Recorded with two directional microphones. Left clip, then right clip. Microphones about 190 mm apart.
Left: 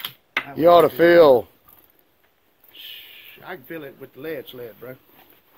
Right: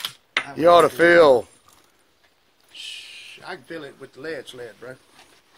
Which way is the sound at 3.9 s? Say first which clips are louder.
Left 2 dB; 35° left (ahead or behind).